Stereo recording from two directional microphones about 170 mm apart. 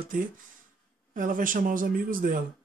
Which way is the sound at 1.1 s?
55° right (ahead or behind).